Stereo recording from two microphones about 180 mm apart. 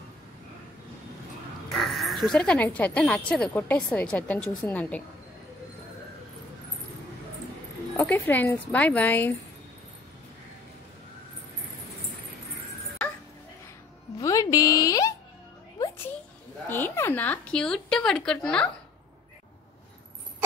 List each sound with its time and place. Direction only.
1.7 s speech: centre (ahead or behind)
8.0 s speech: 10° left (ahead or behind)
14.2 s music: 20° left (ahead or behind)
16.6 s a sound: 10° left (ahead or behind)